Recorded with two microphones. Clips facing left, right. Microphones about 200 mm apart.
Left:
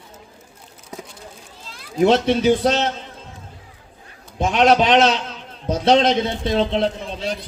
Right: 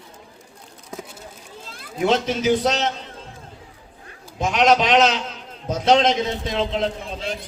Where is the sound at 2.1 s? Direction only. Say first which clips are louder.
Left 3 dB; 35° left (ahead or behind).